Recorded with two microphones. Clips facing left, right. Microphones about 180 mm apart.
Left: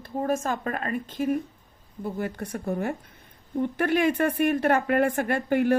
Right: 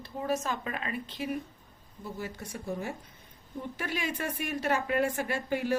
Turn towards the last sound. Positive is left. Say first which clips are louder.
# left 8 dB
turn(degrees=55)  # may be behind; listen again after turning